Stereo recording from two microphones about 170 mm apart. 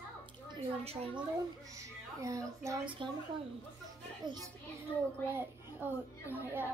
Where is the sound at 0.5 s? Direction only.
35° right (ahead or behind).